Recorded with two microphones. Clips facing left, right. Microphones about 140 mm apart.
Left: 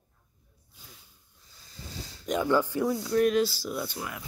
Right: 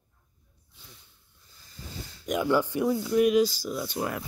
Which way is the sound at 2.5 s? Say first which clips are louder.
Right 1 dB; 15° right (ahead or behind).